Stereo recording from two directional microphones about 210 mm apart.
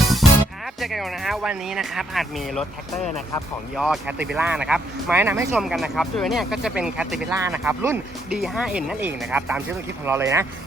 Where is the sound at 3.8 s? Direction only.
5° right (ahead or behind).